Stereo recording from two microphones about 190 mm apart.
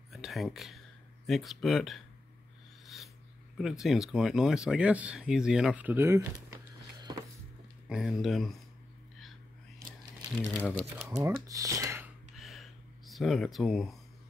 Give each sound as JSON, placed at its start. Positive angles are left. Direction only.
{"t": 0.1, "sound": "a sound", "side_deg": 0}
{"t": 3.5, "sound": "speech", "side_deg": 0}
{"t": 7.9, "sound": "speech", "side_deg": -5}
{"t": 10.5, "sound": "speech", "side_deg": 10}
{"t": 11.0, "sound": "speech", "side_deg": -10}
{"t": 12.4, "sound": "a sound", "side_deg": 0}